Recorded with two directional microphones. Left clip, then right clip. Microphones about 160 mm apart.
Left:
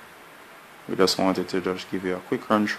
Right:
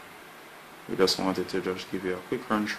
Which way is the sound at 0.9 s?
50° left (ahead or behind).